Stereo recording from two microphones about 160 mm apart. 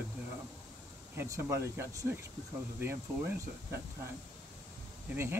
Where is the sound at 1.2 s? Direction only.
15° right (ahead or behind).